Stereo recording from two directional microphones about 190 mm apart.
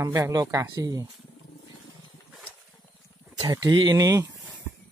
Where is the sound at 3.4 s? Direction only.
20° right (ahead or behind).